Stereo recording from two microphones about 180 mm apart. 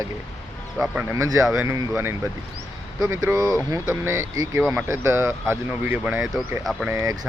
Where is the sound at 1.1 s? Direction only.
15° right (ahead or behind).